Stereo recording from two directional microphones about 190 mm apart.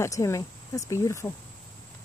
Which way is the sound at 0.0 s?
15° left (ahead or behind).